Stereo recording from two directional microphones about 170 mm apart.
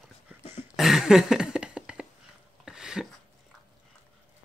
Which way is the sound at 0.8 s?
Centre (ahead or behind).